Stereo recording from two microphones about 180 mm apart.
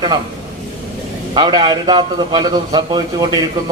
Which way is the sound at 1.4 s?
25° right (ahead or behind).